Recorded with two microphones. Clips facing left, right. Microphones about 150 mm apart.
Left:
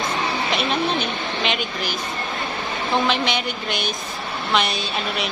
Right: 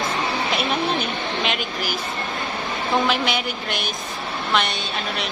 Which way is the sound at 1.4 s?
Centre (ahead or behind).